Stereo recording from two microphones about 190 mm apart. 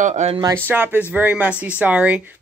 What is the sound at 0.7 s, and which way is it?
A man's voice, 10° right (ahead or behind).